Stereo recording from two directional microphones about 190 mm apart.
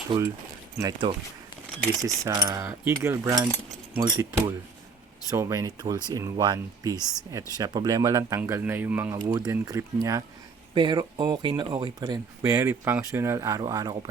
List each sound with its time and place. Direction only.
0.8 s speech: 20° right (ahead or behind)
9.1 s speech: 20° right (ahead or behind)